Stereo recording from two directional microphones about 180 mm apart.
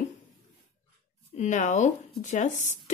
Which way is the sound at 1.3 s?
40° left (ahead or behind).